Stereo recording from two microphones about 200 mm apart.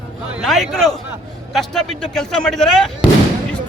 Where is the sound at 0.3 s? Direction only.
Centre (ahead or behind).